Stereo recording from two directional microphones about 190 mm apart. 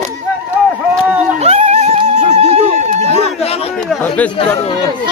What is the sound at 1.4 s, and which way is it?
Music, 35° right (ahead or behind).